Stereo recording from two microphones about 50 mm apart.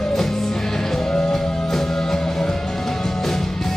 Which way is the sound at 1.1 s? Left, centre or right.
Centre.